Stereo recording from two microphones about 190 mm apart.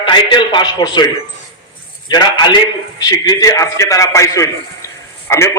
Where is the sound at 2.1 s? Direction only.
20° left (ahead or behind).